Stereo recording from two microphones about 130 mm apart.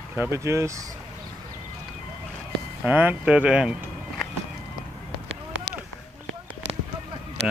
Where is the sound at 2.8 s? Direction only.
15° right (ahead or behind).